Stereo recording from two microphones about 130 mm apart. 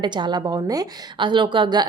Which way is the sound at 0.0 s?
35° right (ahead or behind).